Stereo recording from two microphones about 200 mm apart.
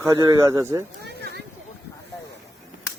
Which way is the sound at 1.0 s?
55° right (ahead or behind).